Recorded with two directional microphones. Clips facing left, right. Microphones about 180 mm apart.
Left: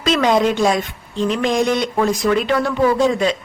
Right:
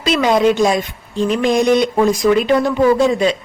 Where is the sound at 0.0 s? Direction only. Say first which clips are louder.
Right 2 dB; 10° right (ahead or behind).